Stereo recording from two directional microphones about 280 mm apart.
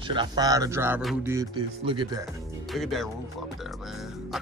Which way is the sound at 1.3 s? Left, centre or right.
Centre.